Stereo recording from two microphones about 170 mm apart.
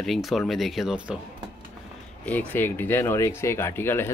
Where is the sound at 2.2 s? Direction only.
10° left (ahead or behind).